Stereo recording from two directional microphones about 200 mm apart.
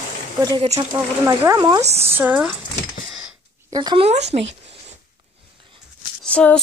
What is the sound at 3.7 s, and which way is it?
Speech, 25° right (ahead or behind).